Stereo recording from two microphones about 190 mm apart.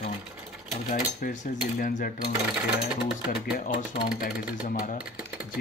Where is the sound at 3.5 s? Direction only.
50° left (ahead or behind).